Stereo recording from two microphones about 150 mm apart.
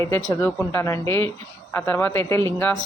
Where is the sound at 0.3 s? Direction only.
15° left (ahead or behind).